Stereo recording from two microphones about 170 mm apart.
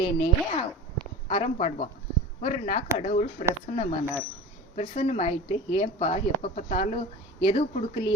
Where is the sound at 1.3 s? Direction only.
40° left (ahead or behind).